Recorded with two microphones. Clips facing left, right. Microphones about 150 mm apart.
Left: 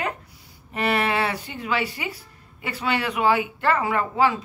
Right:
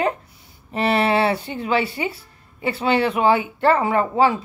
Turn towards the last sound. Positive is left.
turn(degrees=-30)  # may be behind; listen again after turning